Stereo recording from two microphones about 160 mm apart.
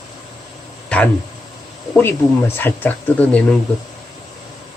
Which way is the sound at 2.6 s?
10° left (ahead or behind).